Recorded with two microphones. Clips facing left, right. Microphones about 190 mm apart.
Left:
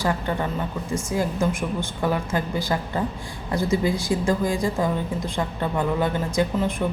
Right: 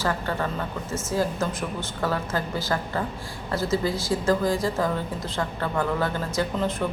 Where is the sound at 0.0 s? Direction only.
15° left (ahead or behind).